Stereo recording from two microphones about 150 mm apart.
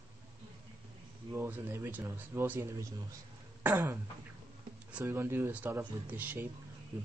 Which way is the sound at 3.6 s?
15° right (ahead or behind).